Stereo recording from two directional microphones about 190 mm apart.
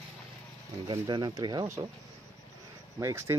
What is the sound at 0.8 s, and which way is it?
Speech, 20° right (ahead or behind).